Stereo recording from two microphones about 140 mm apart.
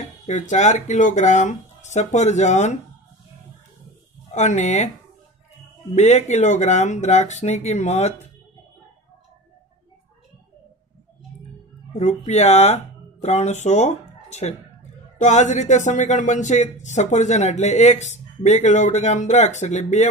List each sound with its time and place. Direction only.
0.0 s speech: 55° left (ahead or behind)
4.3 s speech: 55° left (ahead or behind)
5.9 s speech: 55° left (ahead or behind)
11.9 s speech: 55° left (ahead or behind)